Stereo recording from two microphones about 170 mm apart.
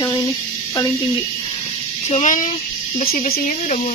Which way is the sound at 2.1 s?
45° left (ahead or behind).